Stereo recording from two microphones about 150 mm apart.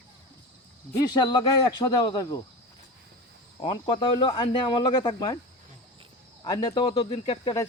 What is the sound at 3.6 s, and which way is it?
Speech, 30° left (ahead or behind).